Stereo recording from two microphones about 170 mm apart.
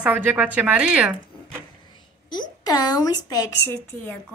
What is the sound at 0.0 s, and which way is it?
A woman's voice, 10° right (ahead or behind).